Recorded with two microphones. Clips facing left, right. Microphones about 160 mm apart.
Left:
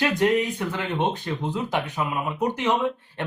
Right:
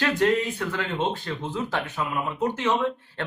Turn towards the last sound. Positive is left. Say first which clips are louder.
# left 1 dB
turn(degrees=15)  # may be behind; listen again after turning